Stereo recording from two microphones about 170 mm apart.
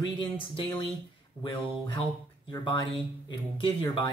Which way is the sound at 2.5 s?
25° left (ahead or behind).